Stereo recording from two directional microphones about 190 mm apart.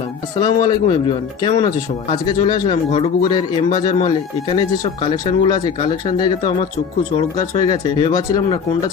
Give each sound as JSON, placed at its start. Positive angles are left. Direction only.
{"t": 0.3, "sound": "speech", "side_deg": 25}